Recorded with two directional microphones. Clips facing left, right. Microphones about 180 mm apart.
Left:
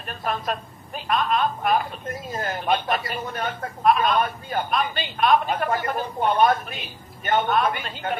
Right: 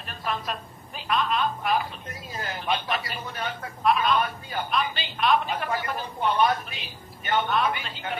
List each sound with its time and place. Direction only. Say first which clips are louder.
0.0 s a woman's voice: left 4 dB; 50° left (ahead or behind)